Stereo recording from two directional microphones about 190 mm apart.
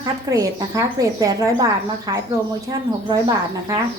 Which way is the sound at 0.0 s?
20° right (ahead or behind).